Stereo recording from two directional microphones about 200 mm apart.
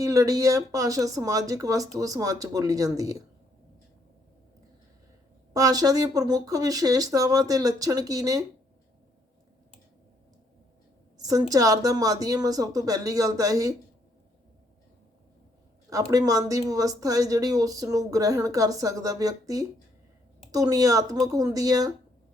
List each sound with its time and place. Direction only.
0.0 s speech: 15° right (ahead or behind)
5.5 s speech: 20° right (ahead or behind)
11.2 s speech: 15° right (ahead or behind)
15.9 s speech: 15° right (ahead or behind)